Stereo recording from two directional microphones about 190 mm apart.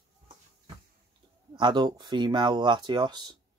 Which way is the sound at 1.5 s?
20° right (ahead or behind).